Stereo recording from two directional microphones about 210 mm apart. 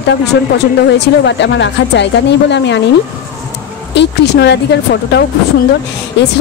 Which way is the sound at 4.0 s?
55° left (ahead or behind).